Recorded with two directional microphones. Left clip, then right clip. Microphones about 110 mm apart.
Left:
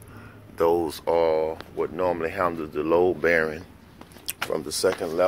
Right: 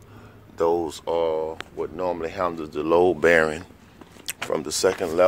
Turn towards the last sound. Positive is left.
turn(degrees=-90)